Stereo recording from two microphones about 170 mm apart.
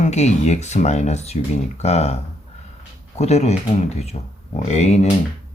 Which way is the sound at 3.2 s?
40° left (ahead or behind).